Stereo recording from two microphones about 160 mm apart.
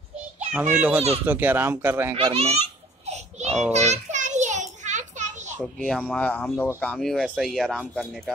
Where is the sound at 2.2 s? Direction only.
35° right (ahead or behind).